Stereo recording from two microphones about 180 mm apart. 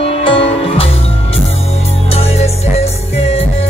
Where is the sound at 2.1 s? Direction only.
35° left (ahead or behind).